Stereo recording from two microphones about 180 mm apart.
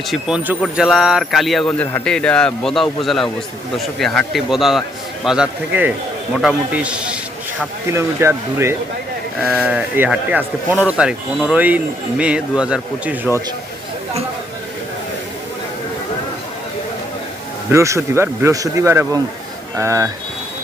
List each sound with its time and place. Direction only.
0.1 s a man's voice: 5° right (ahead or behind)
17.7 s a man's voice: 15° right (ahead or behind)